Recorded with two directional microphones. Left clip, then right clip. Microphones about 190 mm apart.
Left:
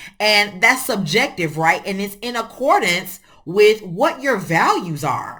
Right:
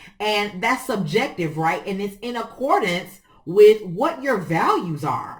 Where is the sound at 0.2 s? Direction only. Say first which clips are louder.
Left 7 dB; 15° left (ahead or behind).